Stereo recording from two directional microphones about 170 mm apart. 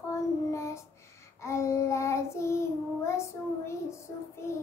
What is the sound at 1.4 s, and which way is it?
Child singing, 15° left (ahead or behind).